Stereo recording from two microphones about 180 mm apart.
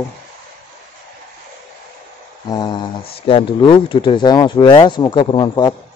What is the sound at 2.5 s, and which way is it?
Speech, 25° left (ahead or behind).